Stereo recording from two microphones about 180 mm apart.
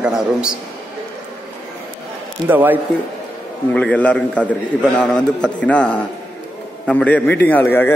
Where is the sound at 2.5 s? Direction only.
10° right (ahead or behind).